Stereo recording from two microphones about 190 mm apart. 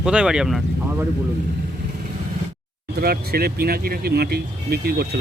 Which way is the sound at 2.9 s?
55° right (ahead or behind).